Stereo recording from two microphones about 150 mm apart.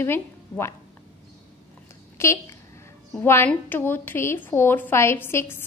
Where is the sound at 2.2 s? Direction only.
15° left (ahead or behind).